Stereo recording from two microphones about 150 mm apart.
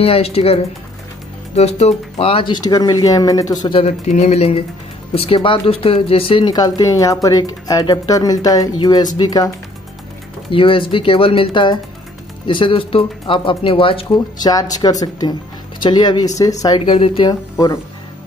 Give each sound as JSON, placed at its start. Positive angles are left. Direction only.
{"t": 0.0, "sound": "speech", "side_deg": 40}
{"t": 3.6, "sound": "speech", "side_deg": 40}
{"t": 10.5, "sound": "speech", "side_deg": 35}